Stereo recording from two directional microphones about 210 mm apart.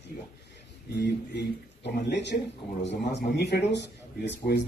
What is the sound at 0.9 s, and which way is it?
Speech, 55° left (ahead or behind).